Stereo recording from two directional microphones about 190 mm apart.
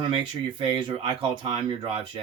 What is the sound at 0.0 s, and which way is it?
Speech, 25° right (ahead or behind).